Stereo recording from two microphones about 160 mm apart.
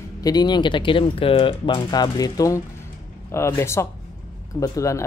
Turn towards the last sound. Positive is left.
turn(degrees=20)  # may be behind; listen again after turning